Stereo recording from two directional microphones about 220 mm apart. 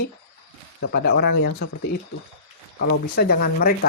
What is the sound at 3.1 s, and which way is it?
Speech, 45° left (ahead or behind).